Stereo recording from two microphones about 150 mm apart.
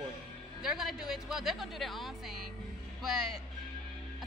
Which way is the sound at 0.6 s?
Centre (ahead or behind).